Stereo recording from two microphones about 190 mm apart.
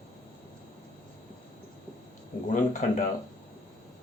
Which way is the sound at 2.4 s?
40° left (ahead or behind).